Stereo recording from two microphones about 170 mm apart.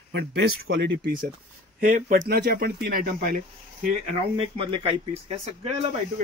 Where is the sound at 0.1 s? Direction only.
85° right.